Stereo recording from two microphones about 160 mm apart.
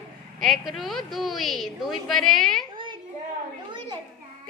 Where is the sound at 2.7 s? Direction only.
30° right (ahead or behind).